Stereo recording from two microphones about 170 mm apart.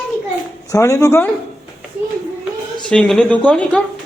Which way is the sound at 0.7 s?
20° left (ahead or behind).